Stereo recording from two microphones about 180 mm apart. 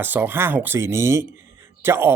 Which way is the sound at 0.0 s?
10° right (ahead or behind).